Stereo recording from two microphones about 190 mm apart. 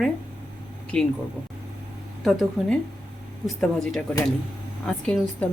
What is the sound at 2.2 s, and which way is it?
A woman's voice, centre (ahead or behind).